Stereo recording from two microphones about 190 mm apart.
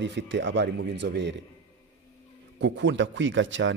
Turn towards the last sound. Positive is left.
turn(degrees=-80)